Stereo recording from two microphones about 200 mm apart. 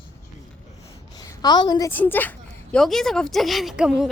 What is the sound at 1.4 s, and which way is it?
A woman's voice, 20° left (ahead or behind).